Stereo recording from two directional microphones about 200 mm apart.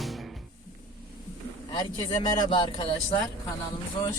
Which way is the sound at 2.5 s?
25° left (ahead or behind).